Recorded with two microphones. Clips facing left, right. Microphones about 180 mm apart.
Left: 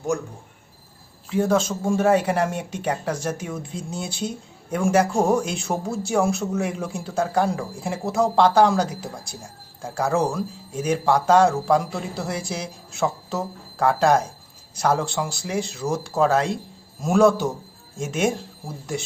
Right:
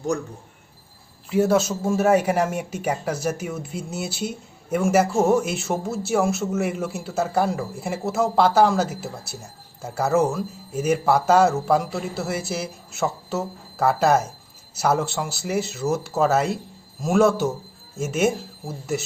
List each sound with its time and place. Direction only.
1.3 s speech: 5° right (ahead or behind)